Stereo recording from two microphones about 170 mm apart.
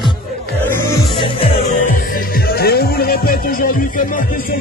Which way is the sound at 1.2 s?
30° left (ahead or behind).